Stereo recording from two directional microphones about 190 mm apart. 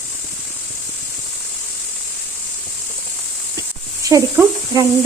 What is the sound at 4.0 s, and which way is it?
Speech, 15° right (ahead or behind).